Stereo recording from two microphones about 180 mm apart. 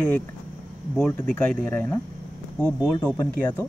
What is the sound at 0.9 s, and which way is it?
Speech, 10° left (ahead or behind).